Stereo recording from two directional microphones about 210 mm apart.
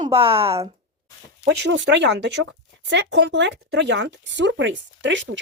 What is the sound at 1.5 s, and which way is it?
Speech, 55° right (ahead or behind).